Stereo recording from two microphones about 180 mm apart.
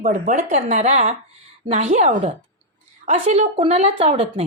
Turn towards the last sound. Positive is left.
turn(degrees=-35)  # may be behind; listen again after turning